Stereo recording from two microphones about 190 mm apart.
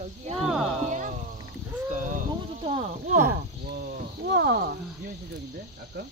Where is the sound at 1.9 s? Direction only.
40° right (ahead or behind).